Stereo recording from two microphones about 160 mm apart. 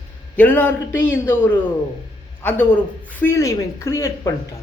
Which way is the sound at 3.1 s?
15° left (ahead or behind).